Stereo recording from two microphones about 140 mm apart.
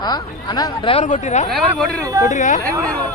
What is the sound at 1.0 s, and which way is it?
Speech, 60° left (ahead or behind).